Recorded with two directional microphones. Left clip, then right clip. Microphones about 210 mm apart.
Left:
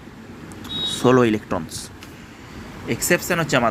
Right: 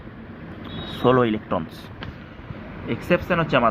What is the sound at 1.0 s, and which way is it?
Speech, 20° left (ahead or behind).